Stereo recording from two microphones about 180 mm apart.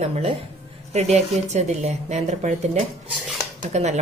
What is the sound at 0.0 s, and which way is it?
A woman's voice, 35° right (ahead or behind).